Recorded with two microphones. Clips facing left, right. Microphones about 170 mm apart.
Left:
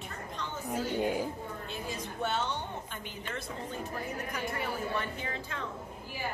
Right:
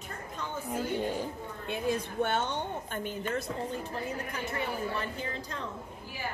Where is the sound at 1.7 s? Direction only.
55° right (ahead or behind).